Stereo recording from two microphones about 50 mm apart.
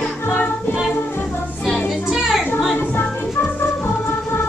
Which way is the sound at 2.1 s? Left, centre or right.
Centre.